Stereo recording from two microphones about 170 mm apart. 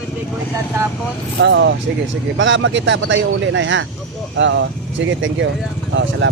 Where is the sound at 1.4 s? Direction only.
90° right.